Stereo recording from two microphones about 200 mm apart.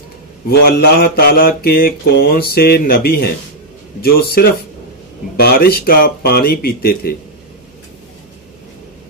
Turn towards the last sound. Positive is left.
turn(degrees=50)  # may be behind; listen again after turning